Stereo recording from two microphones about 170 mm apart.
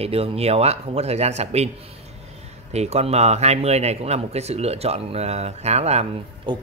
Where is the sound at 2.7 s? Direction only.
40° right (ahead or behind).